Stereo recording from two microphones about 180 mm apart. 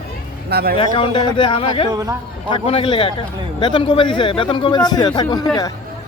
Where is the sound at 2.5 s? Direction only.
30° left (ahead or behind).